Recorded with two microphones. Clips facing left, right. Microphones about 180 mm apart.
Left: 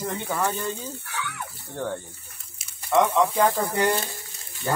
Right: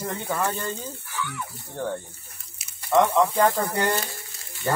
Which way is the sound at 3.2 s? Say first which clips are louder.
Even; 10° left (ahead or behind).